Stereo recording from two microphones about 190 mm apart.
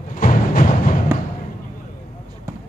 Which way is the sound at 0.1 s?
45° left (ahead or behind).